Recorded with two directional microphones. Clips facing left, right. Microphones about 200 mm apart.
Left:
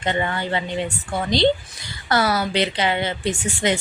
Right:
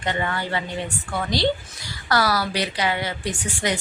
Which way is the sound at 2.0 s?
25° left (ahead or behind).